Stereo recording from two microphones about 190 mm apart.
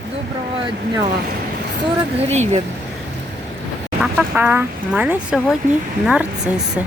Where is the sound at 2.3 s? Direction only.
35° right (ahead or behind).